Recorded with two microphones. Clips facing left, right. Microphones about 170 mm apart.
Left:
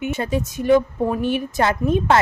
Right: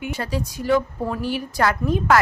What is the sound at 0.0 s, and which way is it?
A woman's voice, 20° left (ahead or behind).